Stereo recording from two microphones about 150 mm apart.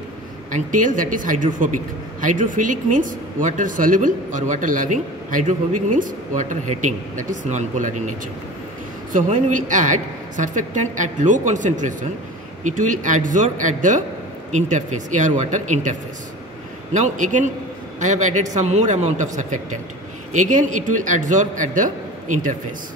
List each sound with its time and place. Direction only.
0.5 s speech: 60° right (ahead or behind)
9.1 s a man's voice: 60° right (ahead or behind)